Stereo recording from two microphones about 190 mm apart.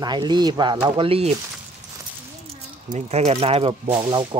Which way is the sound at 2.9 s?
35° right (ahead or behind).